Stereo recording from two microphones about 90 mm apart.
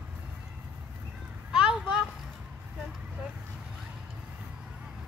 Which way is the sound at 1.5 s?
10° right (ahead or behind).